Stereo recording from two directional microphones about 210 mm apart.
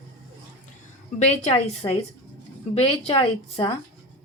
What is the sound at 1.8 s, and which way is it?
Speech, 15° left (ahead or behind).